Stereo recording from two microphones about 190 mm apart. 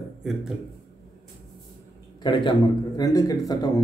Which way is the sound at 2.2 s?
25° left (ahead or behind).